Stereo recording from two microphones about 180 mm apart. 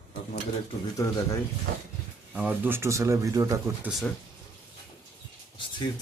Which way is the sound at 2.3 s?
10° right (ahead or behind).